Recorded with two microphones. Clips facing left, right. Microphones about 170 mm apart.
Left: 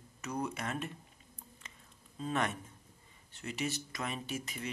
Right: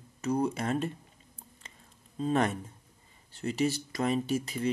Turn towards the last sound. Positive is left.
turn(degrees=-35)  # may be behind; listen again after turning